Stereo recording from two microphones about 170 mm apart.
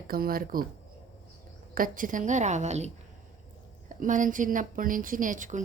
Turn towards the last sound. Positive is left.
turn(degrees=-50)  # may be behind; listen again after turning